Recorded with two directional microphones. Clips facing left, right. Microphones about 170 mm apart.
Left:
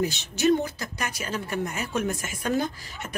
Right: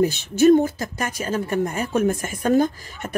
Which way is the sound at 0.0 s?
50° right (ahead or behind).